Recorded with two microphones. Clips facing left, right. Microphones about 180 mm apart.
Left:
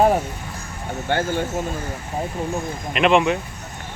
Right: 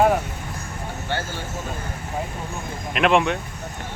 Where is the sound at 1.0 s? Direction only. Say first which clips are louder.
Left 8 dB; 55° left (ahead or behind).